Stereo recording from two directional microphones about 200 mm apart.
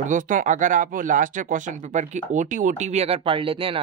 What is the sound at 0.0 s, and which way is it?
Speech, 40° right (ahead or behind).